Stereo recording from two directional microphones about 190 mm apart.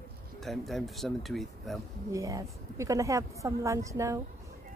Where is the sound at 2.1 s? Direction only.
15° right (ahead or behind).